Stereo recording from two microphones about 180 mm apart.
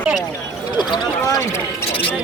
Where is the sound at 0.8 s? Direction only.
25° left (ahead or behind).